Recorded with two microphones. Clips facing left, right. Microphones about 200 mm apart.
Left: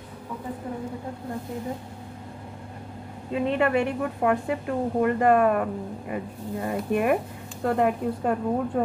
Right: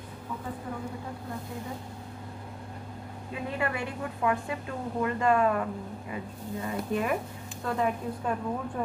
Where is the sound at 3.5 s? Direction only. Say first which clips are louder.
Left 9 dB; 60° left (ahead or behind).